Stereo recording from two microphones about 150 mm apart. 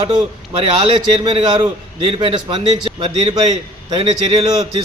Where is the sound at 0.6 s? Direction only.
35° right (ahead or behind).